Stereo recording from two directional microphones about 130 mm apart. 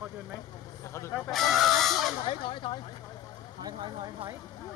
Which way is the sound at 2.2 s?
40° left (ahead or behind).